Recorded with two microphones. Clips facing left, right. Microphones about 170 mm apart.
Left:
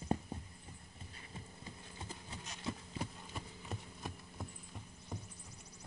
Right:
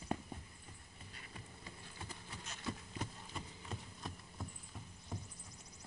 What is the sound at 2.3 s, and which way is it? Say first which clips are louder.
Clip-clop: left 2 dB; 20° left (ahead or behind).